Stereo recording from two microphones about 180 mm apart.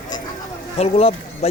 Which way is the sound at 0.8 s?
35° left (ahead or behind).